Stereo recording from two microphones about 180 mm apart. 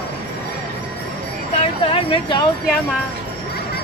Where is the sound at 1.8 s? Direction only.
30° left (ahead or behind).